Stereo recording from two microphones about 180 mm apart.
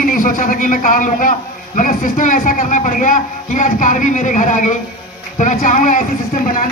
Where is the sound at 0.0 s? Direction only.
50° left (ahead or behind).